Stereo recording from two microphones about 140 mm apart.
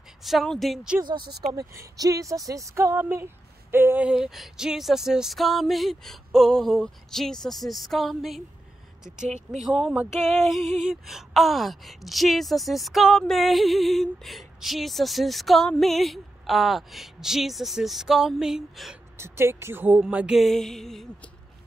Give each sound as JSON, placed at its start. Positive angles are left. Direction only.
{"t": 0.2, "sound": "speech", "side_deg": 0}
{"t": 1.5, "sound": "speech", "side_deg": -25}
{"t": 19.1, "sound": "speech", "side_deg": -20}